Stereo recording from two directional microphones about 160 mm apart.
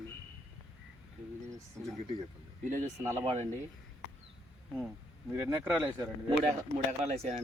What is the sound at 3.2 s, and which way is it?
Speech, 35° right (ahead or behind).